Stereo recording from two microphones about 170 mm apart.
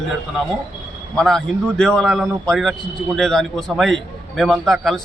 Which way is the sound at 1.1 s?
5° left (ahead or behind).